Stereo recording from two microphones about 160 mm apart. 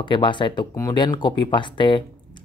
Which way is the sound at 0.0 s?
30° left (ahead or behind).